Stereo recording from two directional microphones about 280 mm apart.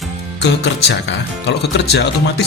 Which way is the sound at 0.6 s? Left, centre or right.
Left.